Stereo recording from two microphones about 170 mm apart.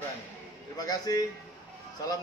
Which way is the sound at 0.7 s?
20° left (ahead or behind).